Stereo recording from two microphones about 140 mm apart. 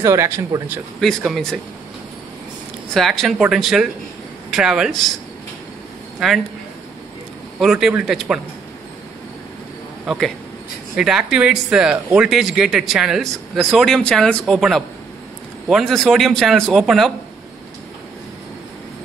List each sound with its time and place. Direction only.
0.0 s speech: 20° right (ahead or behind)
1.0 s speech: 5° left (ahead or behind)
2.9 s speech: centre (ahead or behind)
6.1 s speech: centre (ahead or behind)
7.6 s speech: 5° right (ahead or behind)
10.0 s speech: centre (ahead or behind)